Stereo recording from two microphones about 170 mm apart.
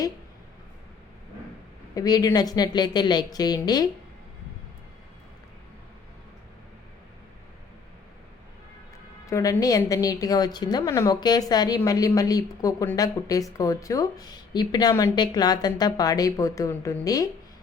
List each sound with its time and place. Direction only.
2.0 s speech: 20° left (ahead or behind)
9.2 s speech: 20° left (ahead or behind)